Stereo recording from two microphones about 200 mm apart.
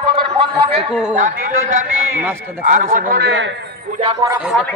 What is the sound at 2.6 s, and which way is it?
Speech, 40° right (ahead or behind).